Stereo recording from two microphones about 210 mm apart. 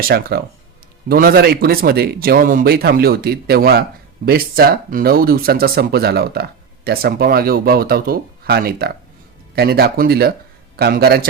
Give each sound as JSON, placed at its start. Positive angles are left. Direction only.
{"t": 0.0, "sound": "speech", "side_deg": -50}